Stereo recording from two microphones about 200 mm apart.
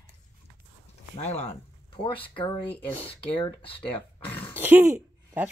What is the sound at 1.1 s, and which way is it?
Speech, 35° left (ahead or behind).